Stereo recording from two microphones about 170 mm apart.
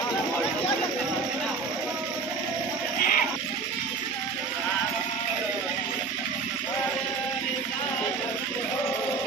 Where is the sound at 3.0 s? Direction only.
55° left (ahead or behind).